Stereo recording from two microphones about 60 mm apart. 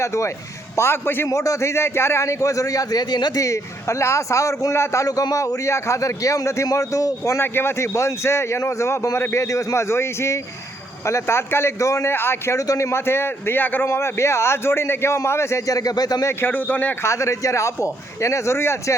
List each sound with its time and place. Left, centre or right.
0.0 s speech: left
0.8 s a man's voice: left
1.3 s speech: left
5.0 s a man's voice: left
7.3 s speech: left
11.8 s speech: left
12.0 s speech: left
12.5 s speech: left
12.9 s a man's voice: left
13.8 s speech: left
16.4 s a man's voice: left
17.0 s speech: left